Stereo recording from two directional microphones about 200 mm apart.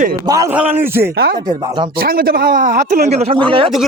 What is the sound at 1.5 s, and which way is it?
Speech, 20° right (ahead or behind).